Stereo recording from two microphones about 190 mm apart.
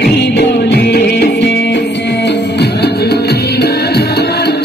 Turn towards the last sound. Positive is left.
turn(degrees=60)  # may be behind; listen again after turning